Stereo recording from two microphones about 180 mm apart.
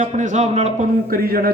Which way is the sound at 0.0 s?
40° right (ahead or behind).